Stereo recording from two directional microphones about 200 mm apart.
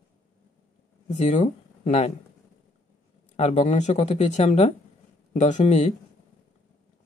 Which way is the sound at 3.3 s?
35° left (ahead or behind).